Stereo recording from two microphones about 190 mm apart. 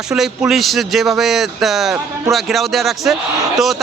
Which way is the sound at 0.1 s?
Centre (ahead or behind).